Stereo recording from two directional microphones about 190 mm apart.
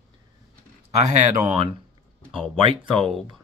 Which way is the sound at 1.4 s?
30° right (ahead or behind).